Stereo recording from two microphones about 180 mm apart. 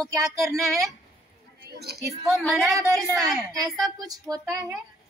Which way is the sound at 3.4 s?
20° right (ahead or behind).